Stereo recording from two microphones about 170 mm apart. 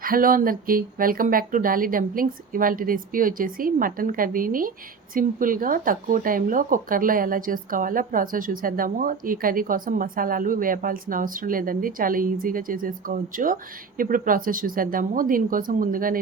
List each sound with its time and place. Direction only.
0.0 s speech: 55° right (ahead or behind)